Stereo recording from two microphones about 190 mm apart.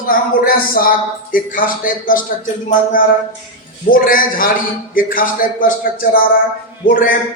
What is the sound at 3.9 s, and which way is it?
A man's voice, 45° left (ahead or behind).